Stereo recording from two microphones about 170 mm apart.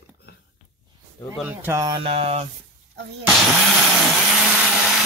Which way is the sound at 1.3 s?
10° right (ahead or behind).